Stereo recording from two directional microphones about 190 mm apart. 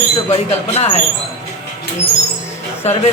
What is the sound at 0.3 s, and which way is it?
Speech, 35° left (ahead or behind).